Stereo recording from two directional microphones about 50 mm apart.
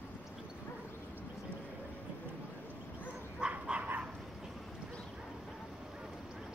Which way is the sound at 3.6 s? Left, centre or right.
Right.